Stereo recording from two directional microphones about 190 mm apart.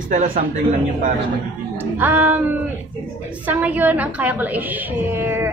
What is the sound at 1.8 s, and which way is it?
Speech, 10° right (ahead or behind).